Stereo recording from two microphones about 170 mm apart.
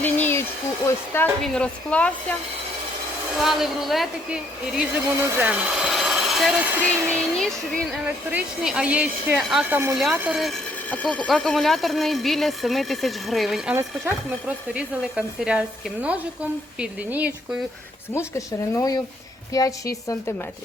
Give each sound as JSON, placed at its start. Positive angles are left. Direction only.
{"t": 0.0, "sound": "a sound", "side_deg": 10}
{"t": 0.9, "sound": "speech", "side_deg": 15}
{"t": 3.3, "sound": "speech", "side_deg": 0}
{"t": 8.0, "sound": "speech", "side_deg": -10}
{"t": 13.7, "sound": "speech", "side_deg": -15}
{"t": 18.1, "sound": "a woman's voice", "side_deg": 15}